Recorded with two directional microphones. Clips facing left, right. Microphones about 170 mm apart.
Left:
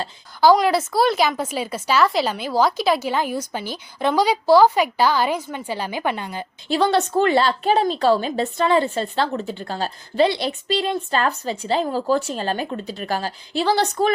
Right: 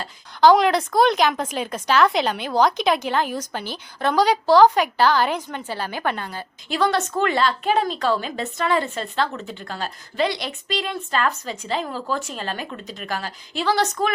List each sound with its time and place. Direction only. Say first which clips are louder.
0.4 s a woman's voice: even; 5° left (ahead or behind)
6.7 s a woman's voice: left 3 dB; 30° left (ahead or behind)